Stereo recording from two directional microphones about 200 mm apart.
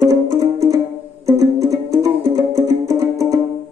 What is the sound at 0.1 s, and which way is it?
Music, 15° right (ahead or behind).